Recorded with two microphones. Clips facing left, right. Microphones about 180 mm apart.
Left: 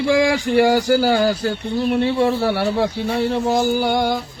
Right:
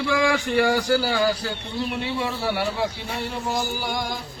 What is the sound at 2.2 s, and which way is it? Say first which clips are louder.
Speech: left 8 dB; 55° left (ahead or behind).